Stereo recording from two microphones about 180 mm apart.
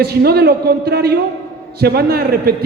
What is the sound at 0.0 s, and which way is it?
A man's voice, 60° right (ahead or behind).